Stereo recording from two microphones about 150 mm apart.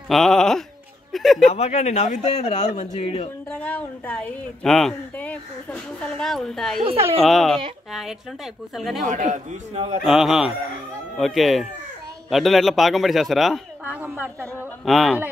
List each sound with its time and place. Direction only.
0.1 s a man's voice: 5° left (ahead or behind)
1.5 s a man's voice: 50° left (ahead or behind)
3.5 s a man's voice: 10° left (ahead or behind)
9.0 s a man's voice: 55° right (ahead or behind)
10.0 s a man's voice: 5° right (ahead or behind)
13.8 s a woman's voice: 10° right (ahead or behind)
14.9 s a man's voice: centre (ahead or behind)